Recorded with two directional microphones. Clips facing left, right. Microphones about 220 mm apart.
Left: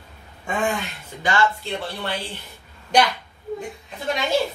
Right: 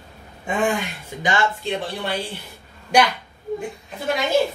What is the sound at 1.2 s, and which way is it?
Speech, 20° right (ahead or behind).